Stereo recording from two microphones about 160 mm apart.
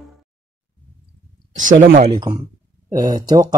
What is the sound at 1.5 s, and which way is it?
Speech, 55° right (ahead or behind).